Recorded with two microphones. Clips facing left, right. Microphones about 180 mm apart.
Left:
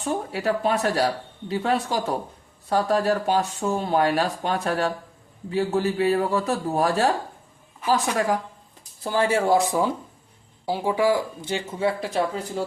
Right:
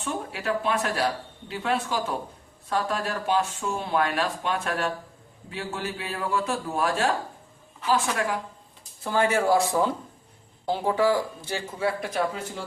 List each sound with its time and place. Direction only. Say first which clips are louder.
0.0 s speech: left 5 dB; 40° left (ahead or behind)
9.6 s speech: left 1 dB; 15° left (ahead or behind)